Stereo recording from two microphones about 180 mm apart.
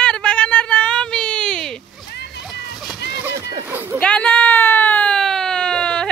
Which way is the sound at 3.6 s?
10° right (ahead or behind).